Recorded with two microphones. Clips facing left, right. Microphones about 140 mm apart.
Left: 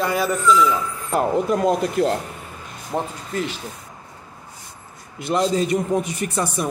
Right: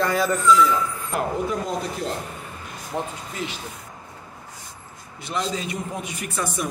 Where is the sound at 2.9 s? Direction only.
35° left (ahead or behind).